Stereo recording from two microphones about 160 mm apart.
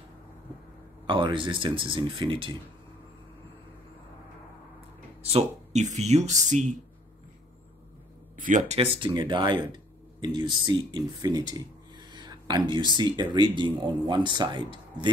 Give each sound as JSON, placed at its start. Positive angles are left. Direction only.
{"t": 1.0, "sound": "speech", "side_deg": -30}
{"t": 5.2, "sound": "speech", "side_deg": -45}
{"t": 8.4, "sound": "speech", "side_deg": -55}
{"t": 8.7, "sound": "speech", "side_deg": -35}